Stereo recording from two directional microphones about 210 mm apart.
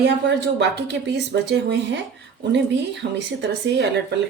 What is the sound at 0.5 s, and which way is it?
Speech, 55° right (ahead or behind).